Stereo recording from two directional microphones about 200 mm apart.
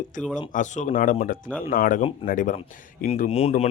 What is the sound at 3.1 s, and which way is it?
Speech, 30° left (ahead or behind).